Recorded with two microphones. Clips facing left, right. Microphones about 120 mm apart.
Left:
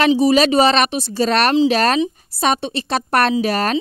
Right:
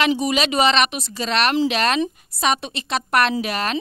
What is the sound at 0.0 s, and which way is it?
A woman's voice, 35° left (ahead or behind).